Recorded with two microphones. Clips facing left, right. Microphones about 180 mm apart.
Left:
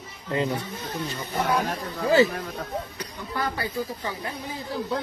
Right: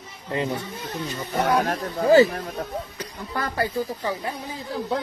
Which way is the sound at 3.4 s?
45° right (ahead or behind).